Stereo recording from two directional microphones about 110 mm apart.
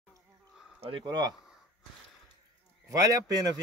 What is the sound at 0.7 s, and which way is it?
Speech, 55° right (ahead or behind).